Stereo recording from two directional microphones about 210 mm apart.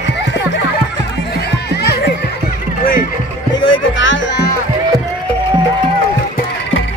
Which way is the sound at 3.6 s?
60° left (ahead or behind).